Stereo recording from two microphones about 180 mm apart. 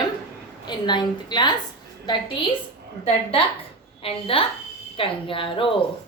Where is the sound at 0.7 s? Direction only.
25° left (ahead or behind).